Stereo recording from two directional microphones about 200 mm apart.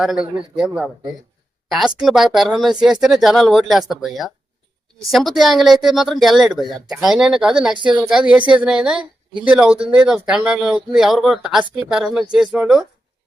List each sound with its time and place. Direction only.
0.0 s speech: centre (ahead or behind)
7.7 s a woman's voice: 25° right (ahead or behind)
7.9 s speech: 5° right (ahead or behind)